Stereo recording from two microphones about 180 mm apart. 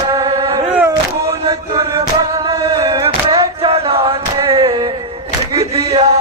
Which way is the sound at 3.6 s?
30° right (ahead or behind).